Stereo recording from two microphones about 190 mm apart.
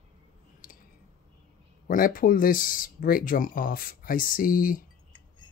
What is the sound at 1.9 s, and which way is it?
Speech, 45° left (ahead or behind).